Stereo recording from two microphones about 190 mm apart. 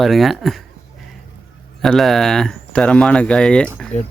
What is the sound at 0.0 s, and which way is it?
Speech, centre (ahead or behind).